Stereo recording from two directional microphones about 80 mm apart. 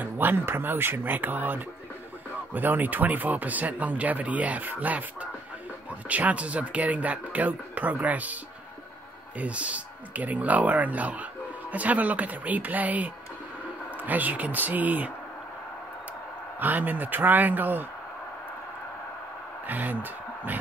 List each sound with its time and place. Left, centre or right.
0.0 s speech: right
9.4 s speech: centre
16.5 s speech: right
19.6 s speech: right